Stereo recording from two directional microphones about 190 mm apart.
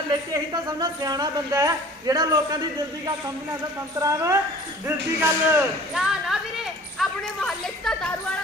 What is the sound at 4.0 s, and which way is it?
Speech, 15° right (ahead or behind).